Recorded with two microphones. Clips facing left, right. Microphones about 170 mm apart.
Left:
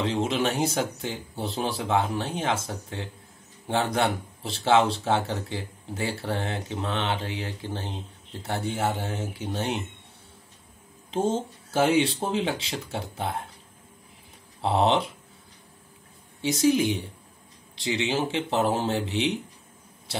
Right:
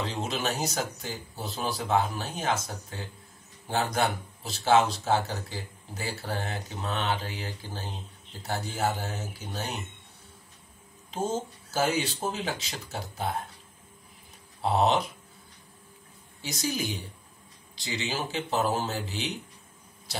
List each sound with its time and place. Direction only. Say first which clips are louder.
0.0 s speech: left 6 dB; 25° left (ahead or behind)
11.1 s speech: left 5 dB; 30° left (ahead or behind)
14.6 s speech: left 2 dB; 25° left (ahead or behind)
16.3 s speech: left 10 dB; 25° left (ahead or behind)